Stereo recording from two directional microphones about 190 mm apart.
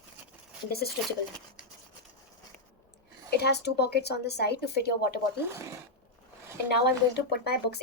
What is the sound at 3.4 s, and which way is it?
Speech, 60° left (ahead or behind).